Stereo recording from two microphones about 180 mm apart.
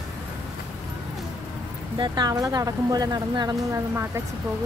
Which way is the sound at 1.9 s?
25° right (ahead or behind).